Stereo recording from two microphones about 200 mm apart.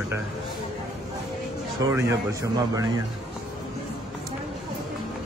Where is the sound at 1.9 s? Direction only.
15° right (ahead or behind).